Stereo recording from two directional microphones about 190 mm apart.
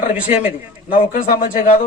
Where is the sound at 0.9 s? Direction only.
45° left (ahead or behind).